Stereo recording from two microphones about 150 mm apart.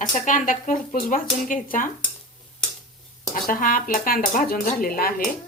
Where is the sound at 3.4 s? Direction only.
65° left (ahead or behind).